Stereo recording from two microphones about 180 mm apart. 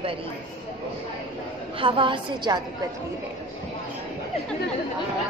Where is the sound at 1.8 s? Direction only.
30° right (ahead or behind).